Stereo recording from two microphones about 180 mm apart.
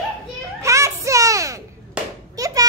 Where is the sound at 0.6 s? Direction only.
15° right (ahead or behind).